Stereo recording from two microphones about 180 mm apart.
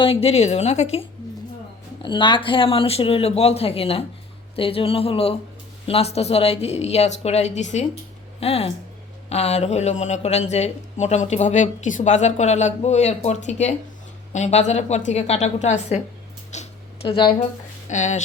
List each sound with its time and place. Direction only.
0.0 s speech: 35° left (ahead or behind)
2.0 s speech: 25° left (ahead or behind)
16.5 s a sound: 35° left (ahead or behind)
17.8 s speech: 40° left (ahead or behind)